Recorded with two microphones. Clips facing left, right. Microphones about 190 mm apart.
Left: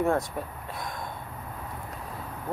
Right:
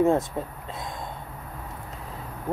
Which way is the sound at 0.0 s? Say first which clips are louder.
Right 4 dB; 20° right (ahead or behind).